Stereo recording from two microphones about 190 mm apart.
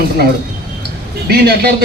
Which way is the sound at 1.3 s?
55° right (ahead or behind).